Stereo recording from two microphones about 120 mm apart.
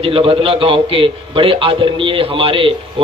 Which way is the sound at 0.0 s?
50° right (ahead or behind).